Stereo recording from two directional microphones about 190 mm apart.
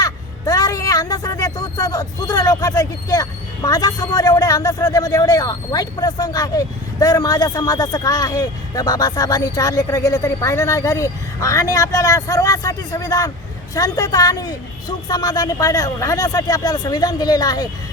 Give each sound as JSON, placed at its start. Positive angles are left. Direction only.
{"t": 0.0, "sound": "speech", "side_deg": 20}